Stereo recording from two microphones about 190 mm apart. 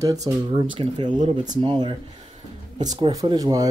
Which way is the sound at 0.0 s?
20° right (ahead or behind).